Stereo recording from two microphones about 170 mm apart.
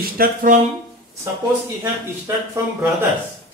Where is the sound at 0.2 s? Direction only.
55° right (ahead or behind).